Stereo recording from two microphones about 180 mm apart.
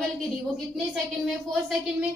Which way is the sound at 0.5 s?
Centre (ahead or behind).